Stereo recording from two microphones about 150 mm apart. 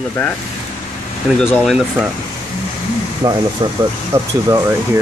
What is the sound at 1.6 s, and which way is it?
Speech, centre (ahead or behind).